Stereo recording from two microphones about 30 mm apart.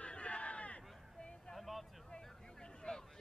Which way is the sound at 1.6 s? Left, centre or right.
Centre.